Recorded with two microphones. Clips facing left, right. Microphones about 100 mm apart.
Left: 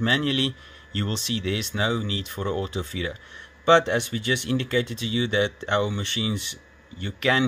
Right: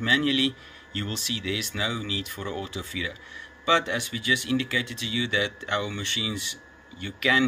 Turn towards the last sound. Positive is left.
turn(degrees=40)  # may be behind; listen again after turning